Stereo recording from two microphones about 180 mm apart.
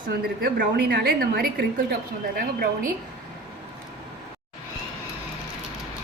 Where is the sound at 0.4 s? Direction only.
55° right (ahead or behind).